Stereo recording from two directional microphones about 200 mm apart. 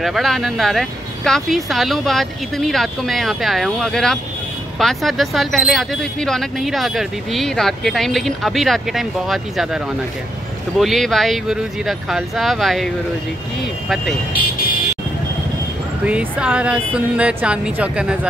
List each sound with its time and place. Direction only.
0.0 s speech: centre (ahead or behind)
10.8 s speech: centre (ahead or behind)
16.1 s speech: 5° right (ahead or behind)